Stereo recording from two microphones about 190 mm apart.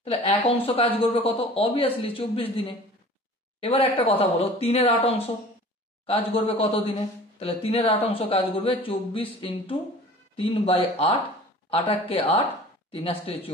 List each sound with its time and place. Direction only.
0.7 s a man's voice: 30° left (ahead or behind)